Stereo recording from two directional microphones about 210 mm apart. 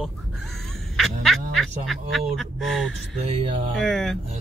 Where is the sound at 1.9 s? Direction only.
Centre (ahead or behind).